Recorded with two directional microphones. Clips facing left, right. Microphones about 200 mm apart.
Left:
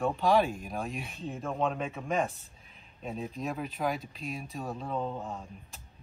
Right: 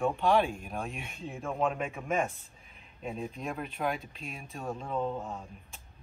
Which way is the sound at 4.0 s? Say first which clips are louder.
Left 5 dB; 40° left (ahead or behind).